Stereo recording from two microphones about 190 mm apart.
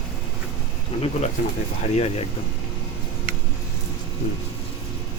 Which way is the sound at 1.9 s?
35° left (ahead or behind).